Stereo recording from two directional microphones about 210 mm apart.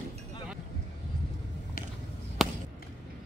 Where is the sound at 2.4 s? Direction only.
Centre (ahead or behind).